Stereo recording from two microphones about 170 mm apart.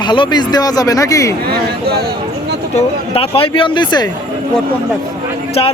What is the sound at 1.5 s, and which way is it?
Speech, 70° right (ahead or behind).